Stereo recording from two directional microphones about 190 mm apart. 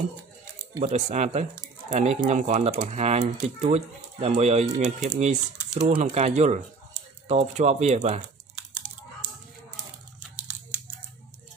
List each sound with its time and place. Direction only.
0.7 s speech: 35° right (ahead or behind)
10.3 s scissors: 5° right (ahead or behind)